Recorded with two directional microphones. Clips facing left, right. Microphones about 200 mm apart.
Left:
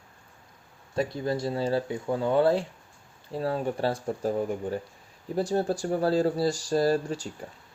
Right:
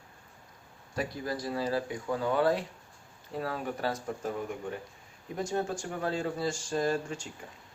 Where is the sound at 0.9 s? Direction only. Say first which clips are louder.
Left 6 dB; 25° left (ahead or behind).